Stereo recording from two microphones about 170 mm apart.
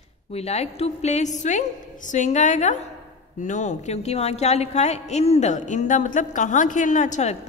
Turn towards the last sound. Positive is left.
turn(degrees=45)  # may be behind; listen again after turning